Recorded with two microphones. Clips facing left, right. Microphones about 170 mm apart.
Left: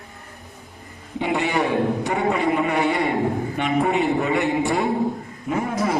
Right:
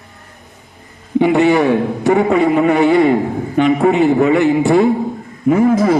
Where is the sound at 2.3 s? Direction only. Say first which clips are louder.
Right 8 dB; centre (ahead or behind).